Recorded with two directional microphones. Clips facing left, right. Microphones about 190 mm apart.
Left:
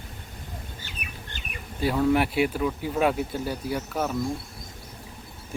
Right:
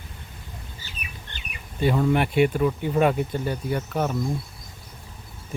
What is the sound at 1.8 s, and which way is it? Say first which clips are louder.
Speech: right 1 dB; centre (ahead or behind).